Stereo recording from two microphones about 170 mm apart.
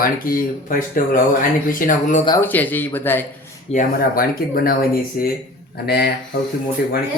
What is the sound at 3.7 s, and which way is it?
Speech, 50° left (ahead or behind).